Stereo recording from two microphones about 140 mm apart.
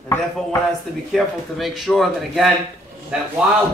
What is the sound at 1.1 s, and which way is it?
Speech, centre (ahead or behind).